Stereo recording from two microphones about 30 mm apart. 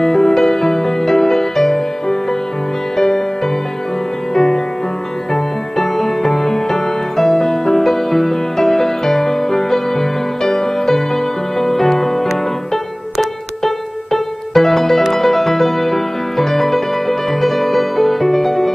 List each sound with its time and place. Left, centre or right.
0.0 s music: centre
4.3 s music: centre